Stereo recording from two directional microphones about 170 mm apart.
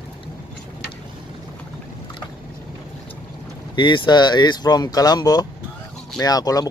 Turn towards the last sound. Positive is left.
turn(degrees=20)  # may be behind; listen again after turning